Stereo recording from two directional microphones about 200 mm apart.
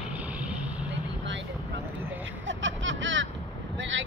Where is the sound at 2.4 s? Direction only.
70° right (ahead or behind).